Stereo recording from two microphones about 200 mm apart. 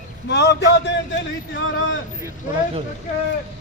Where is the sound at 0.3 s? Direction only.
60° left (ahead or behind).